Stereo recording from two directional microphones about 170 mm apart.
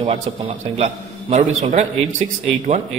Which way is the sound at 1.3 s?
40° right (ahead or behind).